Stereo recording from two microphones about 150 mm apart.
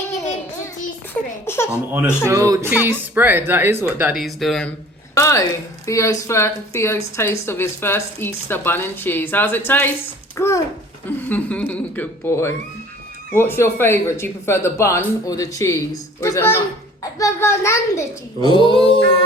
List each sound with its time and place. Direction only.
1.5 s speech: 15° left (ahead or behind)
1.9 s speech: 10° right (ahead or behind)
2.2 s speech: 25° right (ahead or behind)
4.1 s speech: centre (ahead or behind)
5.1 s a woman's voice: 20° left (ahead or behind)
18.4 s a sound: 30° left (ahead or behind)